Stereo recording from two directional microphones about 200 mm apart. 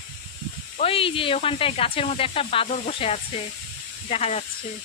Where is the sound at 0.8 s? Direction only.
30° left (ahead or behind).